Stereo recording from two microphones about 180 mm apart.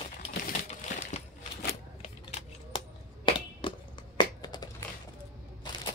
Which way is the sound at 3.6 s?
25° left (ahead or behind).